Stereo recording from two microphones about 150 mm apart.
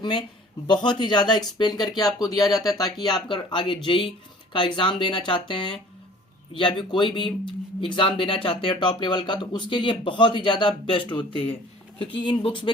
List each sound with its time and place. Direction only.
0.7 s speech: 30° left (ahead or behind)